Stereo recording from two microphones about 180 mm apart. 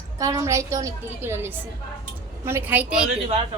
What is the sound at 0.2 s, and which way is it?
A woman's voice, 15° right (ahead or behind).